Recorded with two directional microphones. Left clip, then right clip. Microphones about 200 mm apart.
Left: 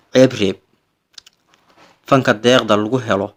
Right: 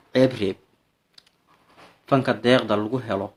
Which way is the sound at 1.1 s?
40° left (ahead or behind).